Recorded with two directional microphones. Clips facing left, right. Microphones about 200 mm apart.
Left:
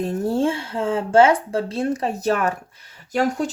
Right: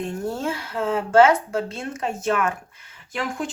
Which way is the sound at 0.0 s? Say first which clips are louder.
Left 6 dB; 30° left (ahead or behind).